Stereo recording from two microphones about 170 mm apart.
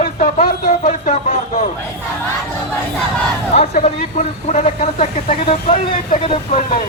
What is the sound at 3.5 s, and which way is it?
Speech, 40° left (ahead or behind).